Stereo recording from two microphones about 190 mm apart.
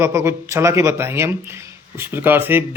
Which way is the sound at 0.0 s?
15° right (ahead or behind).